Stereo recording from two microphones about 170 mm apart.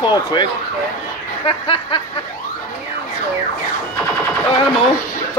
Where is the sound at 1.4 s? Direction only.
30° left (ahead or behind).